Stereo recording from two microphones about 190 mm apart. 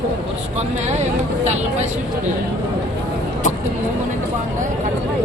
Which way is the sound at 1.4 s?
35° right (ahead or behind).